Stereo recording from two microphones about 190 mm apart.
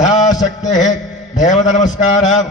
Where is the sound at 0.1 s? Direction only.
20° left (ahead or behind).